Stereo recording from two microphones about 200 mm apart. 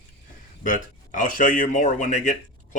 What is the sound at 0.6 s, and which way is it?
A man's voice, 40° left (ahead or behind).